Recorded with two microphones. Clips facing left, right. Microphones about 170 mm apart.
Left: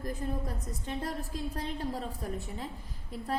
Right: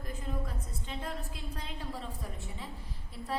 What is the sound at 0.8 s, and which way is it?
A woman's voice, 40° left (ahead or behind).